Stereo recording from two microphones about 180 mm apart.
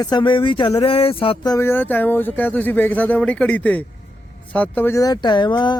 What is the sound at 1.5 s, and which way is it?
Speech, 10° left (ahead or behind).